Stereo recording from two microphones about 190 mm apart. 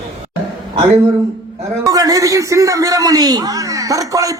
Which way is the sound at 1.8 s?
20° right (ahead or behind).